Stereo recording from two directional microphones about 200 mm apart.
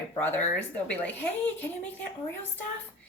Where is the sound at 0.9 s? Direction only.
5° left (ahead or behind).